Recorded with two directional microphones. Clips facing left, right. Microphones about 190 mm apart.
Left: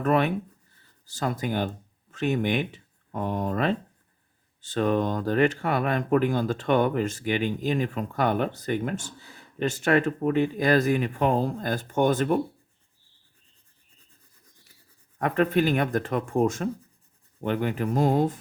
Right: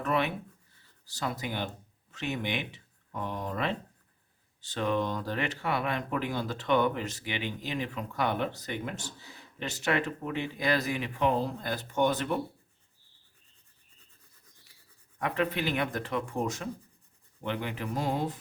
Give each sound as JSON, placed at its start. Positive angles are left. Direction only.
{"t": 0.0, "sound": "speech", "side_deg": 50}
{"t": 15.2, "sound": "speech", "side_deg": 45}